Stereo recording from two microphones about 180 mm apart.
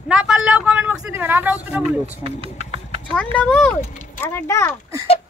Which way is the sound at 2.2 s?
30° right (ahead or behind).